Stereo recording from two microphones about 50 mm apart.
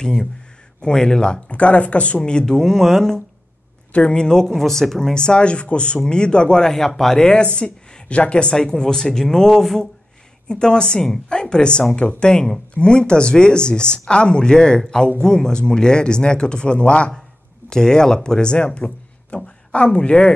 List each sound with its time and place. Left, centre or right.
0.8 s speech: centre
3.9 s speech: left